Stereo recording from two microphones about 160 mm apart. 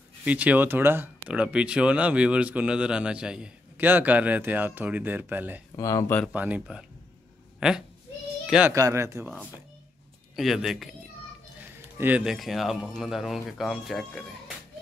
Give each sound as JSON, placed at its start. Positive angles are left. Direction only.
{"t": 0.2, "sound": "speech", "side_deg": -10}
{"t": 5.8, "sound": "speech", "side_deg": 20}
{"t": 6.3, "sound": "a child's voice", "side_deg": -10}
{"t": 8.7, "sound": "speech", "side_deg": -20}
{"t": 10.3, "sound": "speech", "side_deg": 0}
{"t": 12.0, "sound": "speech", "side_deg": -5}